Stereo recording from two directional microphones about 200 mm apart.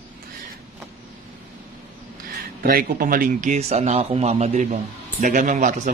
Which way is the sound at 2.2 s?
45° right (ahead or behind).